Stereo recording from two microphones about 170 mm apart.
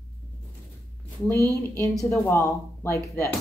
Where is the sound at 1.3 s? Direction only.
15° left (ahead or behind).